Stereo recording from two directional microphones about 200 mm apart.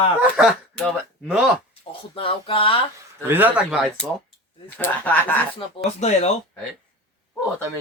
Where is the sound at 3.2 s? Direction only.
10° right (ahead or behind); by 5.3 s 10° left (ahead or behind).